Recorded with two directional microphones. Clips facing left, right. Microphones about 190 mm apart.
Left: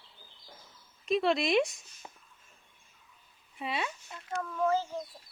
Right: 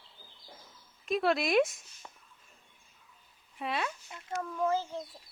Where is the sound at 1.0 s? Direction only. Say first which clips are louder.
Left 1 dB; centre (ahead or behind).